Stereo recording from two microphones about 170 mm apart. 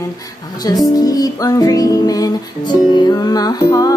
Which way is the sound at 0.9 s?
20° left (ahead or behind).